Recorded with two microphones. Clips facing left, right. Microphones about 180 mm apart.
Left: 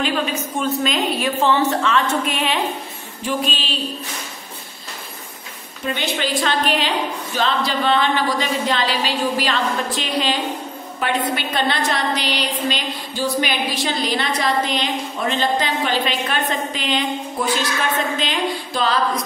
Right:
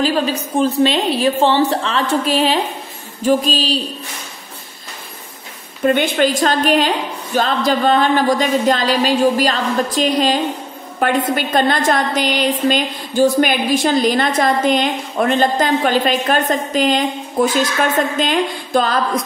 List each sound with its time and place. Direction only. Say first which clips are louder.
0.0 s a woman's voice: right 4 dB; 35° right (ahead or behind)
5.9 s a woman's voice: right 9 dB; 50° right (ahead or behind)